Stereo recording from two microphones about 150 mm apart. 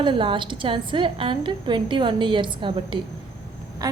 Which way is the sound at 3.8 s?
25° right (ahead or behind).